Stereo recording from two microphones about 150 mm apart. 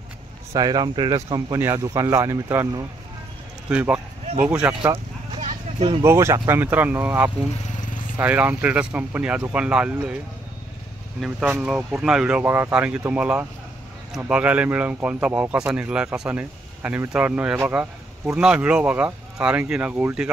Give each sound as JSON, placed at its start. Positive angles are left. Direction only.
{"t": 0.5, "sound": "speech", "side_deg": -25}
{"t": 3.7, "sound": "speech", "side_deg": -10}
{"t": 5.4, "sound": "a sound", "side_deg": -45}
{"t": 6.0, "sound": "speech", "side_deg": -20}
{"t": 7.6, "sound": "vehicle", "side_deg": 60}
{"t": 8.2, "sound": "speech", "side_deg": -10}
{"t": 11.1, "sound": "speech", "side_deg": -5}